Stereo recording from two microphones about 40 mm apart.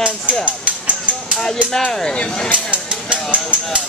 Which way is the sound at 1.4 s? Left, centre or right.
Centre.